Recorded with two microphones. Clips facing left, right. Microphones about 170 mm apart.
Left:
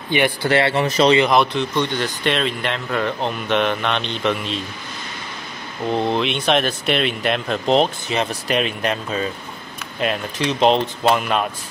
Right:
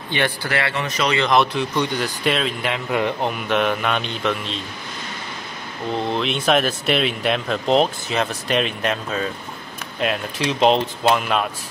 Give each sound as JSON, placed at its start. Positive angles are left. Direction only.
{"t": 0.1, "sound": "speech", "side_deg": 15}
{"t": 0.5, "sound": "speech", "side_deg": 30}
{"t": 1.3, "sound": "speech", "side_deg": -5}
{"t": 2.9, "sound": "speech", "side_deg": -15}
{"t": 6.1, "sound": "speech", "side_deg": 0}